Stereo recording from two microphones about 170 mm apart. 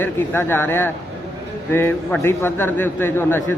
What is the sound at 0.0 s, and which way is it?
A man's voice, 10° left (ahead or behind).